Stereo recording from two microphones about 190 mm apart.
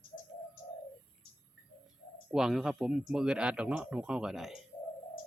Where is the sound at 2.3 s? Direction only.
Centre (ahead or behind).